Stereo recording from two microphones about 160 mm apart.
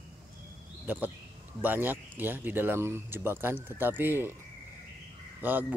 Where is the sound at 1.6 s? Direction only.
10° right (ahead or behind).